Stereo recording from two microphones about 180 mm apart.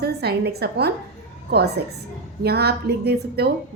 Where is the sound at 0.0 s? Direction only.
65° right (ahead or behind).